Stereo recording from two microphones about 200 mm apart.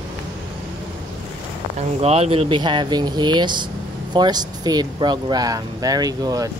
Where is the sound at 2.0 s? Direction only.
30° right (ahead or behind).